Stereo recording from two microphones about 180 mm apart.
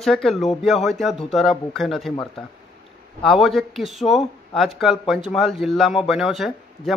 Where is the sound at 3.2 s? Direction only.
Centre (ahead or behind).